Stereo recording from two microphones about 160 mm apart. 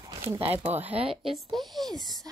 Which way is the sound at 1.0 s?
35° right (ahead or behind).